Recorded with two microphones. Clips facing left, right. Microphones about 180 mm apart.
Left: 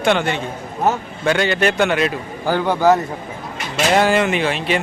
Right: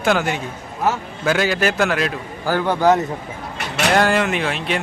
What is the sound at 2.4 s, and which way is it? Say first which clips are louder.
A man's voice: left 1 dB; 15° left (ahead or behind).